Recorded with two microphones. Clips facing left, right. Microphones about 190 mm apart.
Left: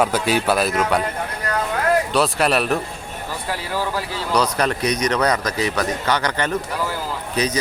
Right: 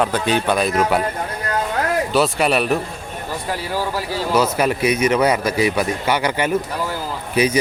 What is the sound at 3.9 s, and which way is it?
Speech, 5° right (ahead or behind).